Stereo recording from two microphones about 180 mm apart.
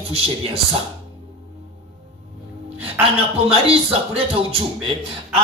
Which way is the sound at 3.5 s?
35° right (ahead or behind).